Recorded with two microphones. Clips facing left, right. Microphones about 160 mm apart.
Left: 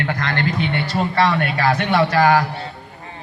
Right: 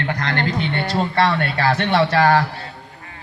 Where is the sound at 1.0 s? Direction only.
20° left (ahead or behind).